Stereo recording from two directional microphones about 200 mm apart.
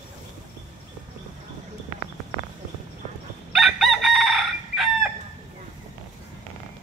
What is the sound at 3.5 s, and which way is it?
Chicken, centre (ahead or behind).